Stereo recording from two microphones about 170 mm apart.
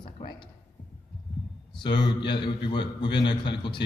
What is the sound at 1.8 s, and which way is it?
A man's voice, 25° left (ahead or behind).